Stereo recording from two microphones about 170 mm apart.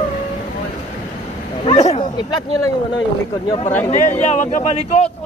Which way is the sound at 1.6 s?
35° left (ahead or behind).